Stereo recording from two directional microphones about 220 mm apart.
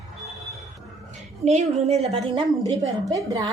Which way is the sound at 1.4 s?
30° right (ahead or behind).